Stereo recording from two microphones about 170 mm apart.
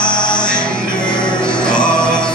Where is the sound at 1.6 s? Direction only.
5° left (ahead or behind).